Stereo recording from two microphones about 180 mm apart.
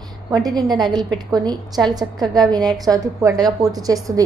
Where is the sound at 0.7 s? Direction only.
25° right (ahead or behind).